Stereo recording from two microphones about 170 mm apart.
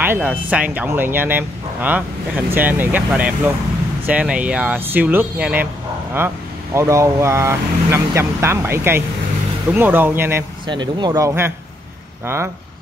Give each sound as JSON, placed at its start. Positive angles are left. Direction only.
{"t": 0.0, "sound": "speech", "side_deg": -10}
{"t": 10.7, "sound": "speech", "side_deg": -25}